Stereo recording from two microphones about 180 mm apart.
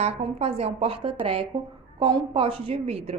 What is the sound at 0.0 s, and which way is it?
A woman's voice, 35° right (ahead or behind).